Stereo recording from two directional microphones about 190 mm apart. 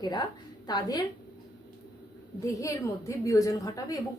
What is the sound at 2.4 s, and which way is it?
A woman's voice, 15° left (ahead or behind).